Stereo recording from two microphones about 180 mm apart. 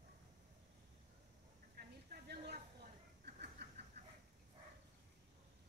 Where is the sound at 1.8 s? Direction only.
60° right (ahead or behind).